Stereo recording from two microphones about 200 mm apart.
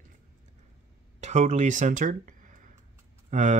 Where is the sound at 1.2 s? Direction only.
35° right (ahead or behind).